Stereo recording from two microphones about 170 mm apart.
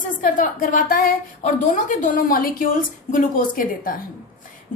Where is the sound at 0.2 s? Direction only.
50° left (ahead or behind).